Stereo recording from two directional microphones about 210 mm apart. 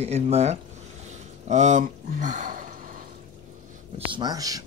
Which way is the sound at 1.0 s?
35° right (ahead or behind).